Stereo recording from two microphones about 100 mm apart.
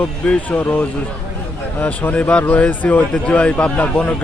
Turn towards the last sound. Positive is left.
turn(degrees=15)  # may be behind; listen again after turning